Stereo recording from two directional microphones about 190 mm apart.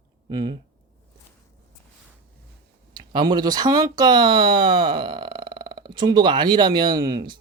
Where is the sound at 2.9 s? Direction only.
25° right (ahead or behind).